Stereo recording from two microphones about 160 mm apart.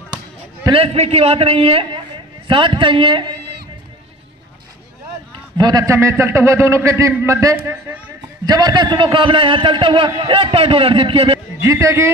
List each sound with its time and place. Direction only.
0.7 s a man's voice: 35° right (ahead or behind)
5.6 s a man's voice: 25° right (ahead or behind)
8.5 s a man's voice: 25° right (ahead or behind)
11.3 s a man's voice: 20° right (ahead or behind)